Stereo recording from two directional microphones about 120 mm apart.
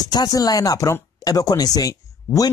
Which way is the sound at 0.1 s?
35° left (ahead or behind).